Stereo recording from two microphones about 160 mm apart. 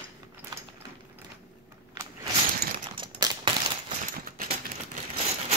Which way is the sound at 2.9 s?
30° right (ahead or behind).